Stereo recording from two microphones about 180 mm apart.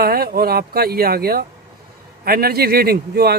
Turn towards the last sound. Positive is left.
turn(degrees=-60)  # may be behind; listen again after turning